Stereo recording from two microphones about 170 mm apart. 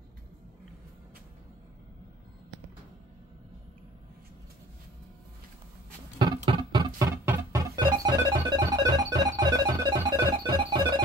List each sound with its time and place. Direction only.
6.1 s music: 25° right (ahead or behind)